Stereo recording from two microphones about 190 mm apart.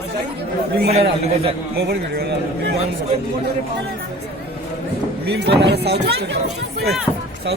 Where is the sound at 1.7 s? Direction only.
55° right (ahead or behind).